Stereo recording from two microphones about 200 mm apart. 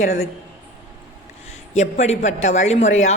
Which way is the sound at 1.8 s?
35° left (ahead or behind).